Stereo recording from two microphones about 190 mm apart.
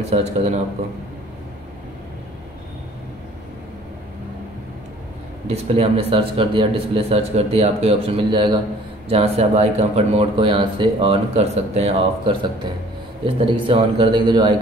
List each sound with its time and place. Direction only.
0.1 s speech: 35° right (ahead or behind)
5.5 s a man's voice: 30° right (ahead or behind)